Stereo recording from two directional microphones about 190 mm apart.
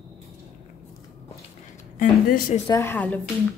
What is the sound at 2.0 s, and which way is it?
Speech, 45° left (ahead or behind).